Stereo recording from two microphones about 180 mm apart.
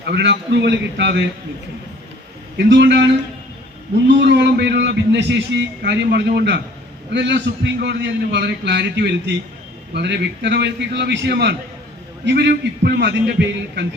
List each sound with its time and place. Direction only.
0.0 s a man's voice: 70° right (ahead or behind)
2.6 s a man's voice: 75° right (ahead or behind)